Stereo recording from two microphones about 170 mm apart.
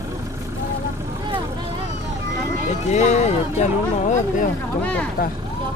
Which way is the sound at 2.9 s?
40° left (ahead or behind).